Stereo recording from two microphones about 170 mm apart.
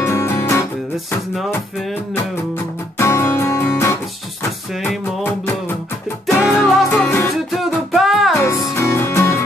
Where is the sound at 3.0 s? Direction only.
15° left (ahead or behind).